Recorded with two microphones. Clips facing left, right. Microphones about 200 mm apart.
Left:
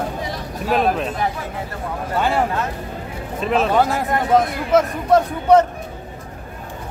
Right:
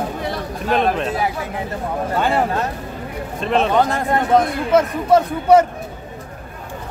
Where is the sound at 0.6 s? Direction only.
Centre (ahead or behind).